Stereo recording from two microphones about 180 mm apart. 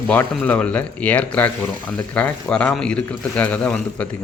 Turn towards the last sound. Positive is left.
turn(degrees=5)  # may be behind; listen again after turning